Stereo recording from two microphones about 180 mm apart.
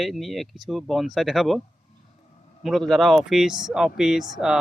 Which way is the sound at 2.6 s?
Centre (ahead or behind).